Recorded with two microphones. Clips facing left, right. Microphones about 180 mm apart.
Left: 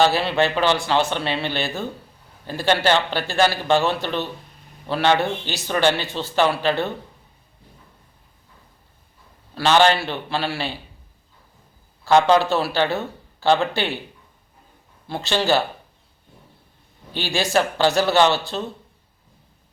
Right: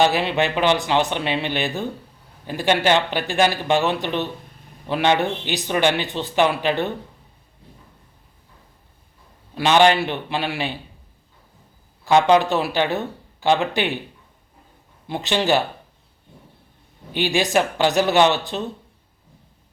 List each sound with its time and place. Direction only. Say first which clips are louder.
0.0 s a man's voice: even; 15° right (ahead or behind)
9.6 s a man's voice: right 1 dB; 15° right (ahead or behind)
12.0 s a man's voice: even; 15° right (ahead or behind)
15.0 s a man's voice: right 1 dB; 15° right (ahead or behind)
17.2 s a man's voice: right 2 dB; 15° right (ahead or behind)